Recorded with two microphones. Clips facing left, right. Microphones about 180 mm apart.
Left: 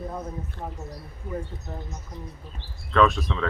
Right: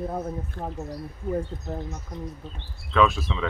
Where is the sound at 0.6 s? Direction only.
50° right (ahead or behind).